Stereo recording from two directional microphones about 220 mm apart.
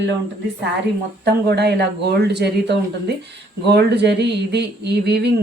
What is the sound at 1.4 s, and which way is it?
Speech, 50° right (ahead or behind).